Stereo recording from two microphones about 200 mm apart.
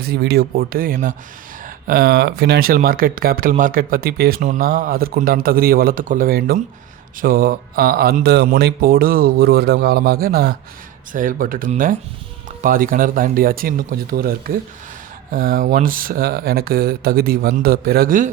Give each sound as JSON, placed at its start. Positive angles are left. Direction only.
{"t": 0.0, "sound": "speech", "side_deg": -55}